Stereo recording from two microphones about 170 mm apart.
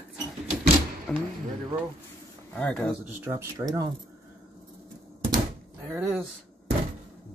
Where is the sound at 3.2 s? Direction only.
15° right (ahead or behind).